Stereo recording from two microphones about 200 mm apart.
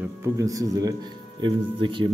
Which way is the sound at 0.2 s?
15° right (ahead or behind).